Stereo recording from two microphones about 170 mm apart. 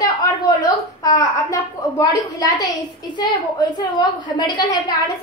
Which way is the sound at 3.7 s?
25° left (ahead or behind).